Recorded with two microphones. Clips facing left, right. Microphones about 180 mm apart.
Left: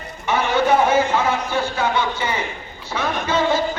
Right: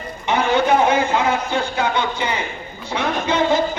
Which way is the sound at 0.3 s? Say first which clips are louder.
Right 1 dB; 15° right (ahead or behind).